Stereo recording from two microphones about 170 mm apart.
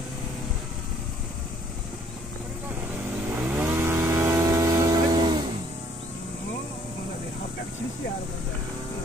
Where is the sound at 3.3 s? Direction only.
10° right (ahead or behind).